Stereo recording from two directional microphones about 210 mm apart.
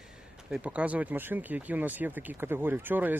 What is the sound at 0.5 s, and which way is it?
Speech, 5° right (ahead or behind).